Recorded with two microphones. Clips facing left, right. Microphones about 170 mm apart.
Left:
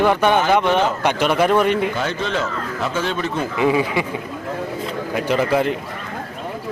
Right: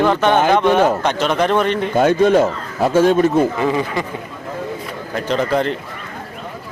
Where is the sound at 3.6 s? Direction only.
10° left (ahead or behind).